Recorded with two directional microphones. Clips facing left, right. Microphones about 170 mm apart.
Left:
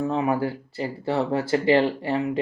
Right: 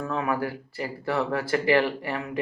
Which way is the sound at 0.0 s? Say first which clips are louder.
Left 4 dB; 25° left (ahead or behind).